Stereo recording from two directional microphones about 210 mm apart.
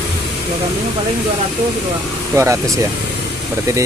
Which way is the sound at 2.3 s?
15° right (ahead or behind).